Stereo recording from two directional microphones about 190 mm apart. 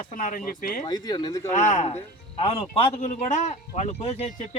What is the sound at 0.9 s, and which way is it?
Speech, 20° left (ahead or behind).